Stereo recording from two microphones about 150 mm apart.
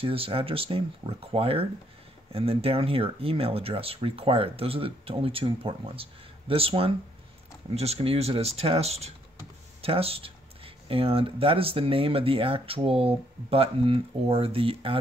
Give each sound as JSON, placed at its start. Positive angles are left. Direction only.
{"t": 0.0, "sound": "speech", "side_deg": -40}